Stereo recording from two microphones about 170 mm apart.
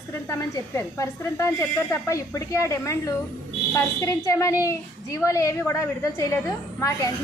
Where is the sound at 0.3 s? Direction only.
15° left (ahead or behind).